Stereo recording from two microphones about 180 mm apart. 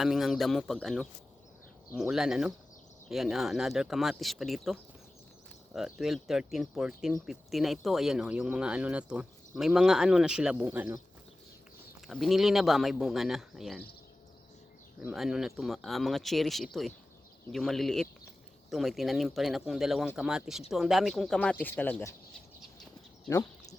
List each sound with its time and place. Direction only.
0.0 s speech: centre (ahead or behind)
12.0 s speech: centre (ahead or behind)
15.1 s speech: centre (ahead or behind)